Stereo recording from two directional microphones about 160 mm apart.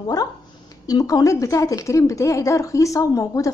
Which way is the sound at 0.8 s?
25° left (ahead or behind).